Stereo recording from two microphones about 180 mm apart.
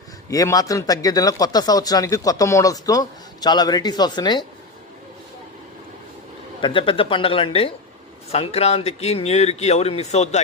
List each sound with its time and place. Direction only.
0.3 s speech: 20° left (ahead or behind)
6.6 s speech: 30° left (ahead or behind)